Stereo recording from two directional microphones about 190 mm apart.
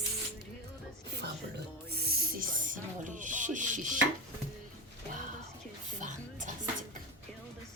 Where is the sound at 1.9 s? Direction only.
55° right (ahead or behind).